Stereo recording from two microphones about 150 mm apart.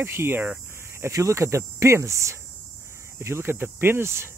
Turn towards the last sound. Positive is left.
turn(degrees=-15)  # may be behind; listen again after turning